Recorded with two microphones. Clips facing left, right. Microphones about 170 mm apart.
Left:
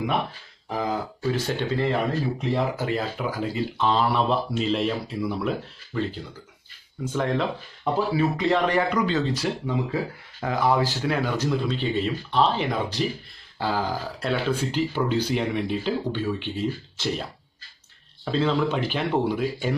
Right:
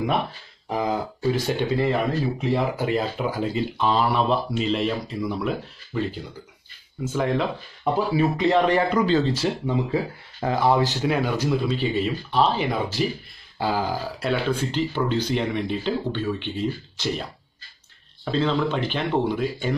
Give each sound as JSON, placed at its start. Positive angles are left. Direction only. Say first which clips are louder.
{"t": 0.7, "sound": "speech", "louder": "right 2 dB", "side_deg": -15}
{"t": 3.7, "sound": "speech", "louder": "even", "side_deg": -10}
{"t": 8.1, "sound": "speech", "louder": "right 3 dB", "side_deg": -20}
{"t": 14.3, "sound": "speech", "louder": "even", "side_deg": 5}